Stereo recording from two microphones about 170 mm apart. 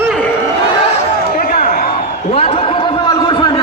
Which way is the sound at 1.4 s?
50° left (ahead or behind).